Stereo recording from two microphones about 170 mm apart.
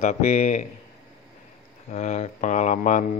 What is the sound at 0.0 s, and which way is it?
Speech, 50° left (ahead or behind).